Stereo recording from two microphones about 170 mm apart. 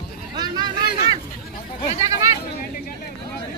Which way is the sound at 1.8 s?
35° left (ahead or behind).